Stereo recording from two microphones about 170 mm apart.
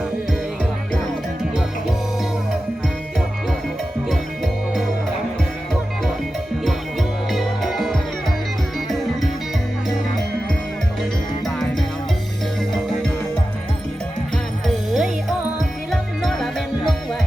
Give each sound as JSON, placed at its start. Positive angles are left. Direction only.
{"t": 7.3, "sound": "music", "side_deg": 0}
{"t": 14.9, "sound": "music", "side_deg": -5}